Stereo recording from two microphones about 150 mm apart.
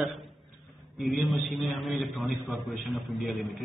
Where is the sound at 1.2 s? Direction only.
Centre (ahead or behind).